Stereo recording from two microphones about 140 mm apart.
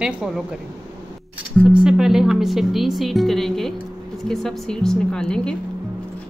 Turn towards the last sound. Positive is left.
turn(degrees=5)  # may be behind; listen again after turning